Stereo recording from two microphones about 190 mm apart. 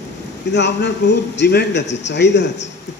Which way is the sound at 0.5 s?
65° left (ahead or behind).